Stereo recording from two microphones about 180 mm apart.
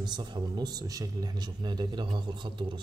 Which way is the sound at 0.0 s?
25° right (ahead or behind).